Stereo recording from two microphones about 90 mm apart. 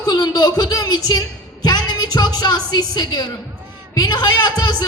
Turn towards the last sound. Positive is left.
turn(degrees=50)  # may be behind; listen again after turning